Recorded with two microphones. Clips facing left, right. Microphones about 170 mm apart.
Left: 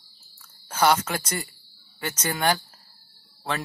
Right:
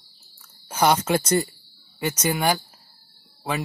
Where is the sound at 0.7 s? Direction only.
20° right (ahead or behind).